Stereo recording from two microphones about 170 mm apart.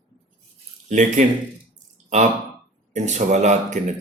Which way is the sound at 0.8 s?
45° right (ahead or behind).